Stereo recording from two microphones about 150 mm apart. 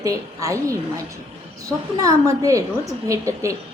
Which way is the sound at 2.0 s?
20° right (ahead or behind).